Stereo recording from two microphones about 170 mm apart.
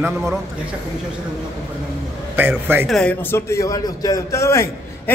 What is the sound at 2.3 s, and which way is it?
Speech, 10° right (ahead or behind).